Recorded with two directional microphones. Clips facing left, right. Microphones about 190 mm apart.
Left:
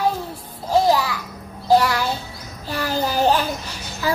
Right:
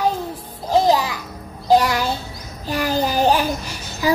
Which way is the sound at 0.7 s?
15° right (ahead or behind).